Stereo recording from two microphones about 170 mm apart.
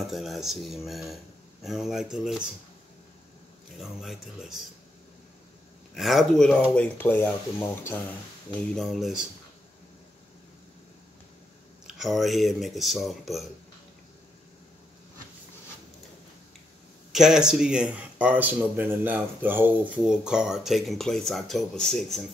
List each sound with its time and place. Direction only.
0.1 s speech: centre (ahead or behind)
3.7 s speech: centre (ahead or behind)
5.9 s speech: centre (ahead or behind)
8.7 s speech: centre (ahead or behind)
11.9 s speech: centre (ahead or behind)
17.1 s speech: 5° right (ahead or behind)